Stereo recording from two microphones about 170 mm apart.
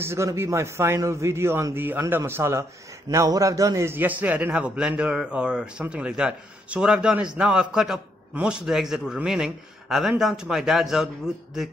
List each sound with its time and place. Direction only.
0.0 s a man's voice: 15° right (ahead or behind)